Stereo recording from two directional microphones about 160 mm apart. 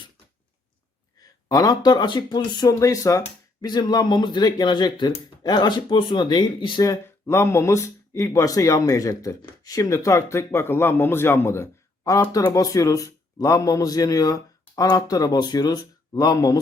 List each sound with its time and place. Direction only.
1.2 s speech: 20° left (ahead or behind)